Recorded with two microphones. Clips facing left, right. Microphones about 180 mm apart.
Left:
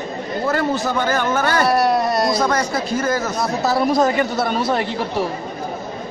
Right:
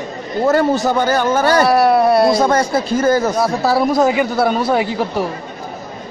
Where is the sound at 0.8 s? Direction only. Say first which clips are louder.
Right 4 dB; 35° right (ahead or behind).